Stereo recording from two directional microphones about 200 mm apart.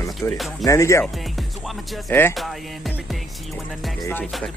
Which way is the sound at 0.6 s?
15° left (ahead or behind).